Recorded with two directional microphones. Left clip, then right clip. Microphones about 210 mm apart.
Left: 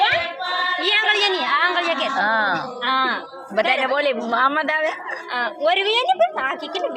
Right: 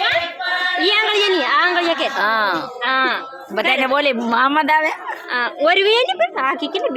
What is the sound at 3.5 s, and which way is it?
A woman's voice, 25° right (ahead or behind).